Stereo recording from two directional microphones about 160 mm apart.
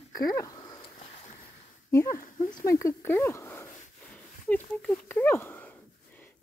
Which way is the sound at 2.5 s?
20° left (ahead or behind).